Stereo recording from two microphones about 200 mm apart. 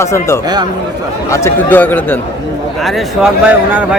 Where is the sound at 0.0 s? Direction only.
15° left (ahead or behind).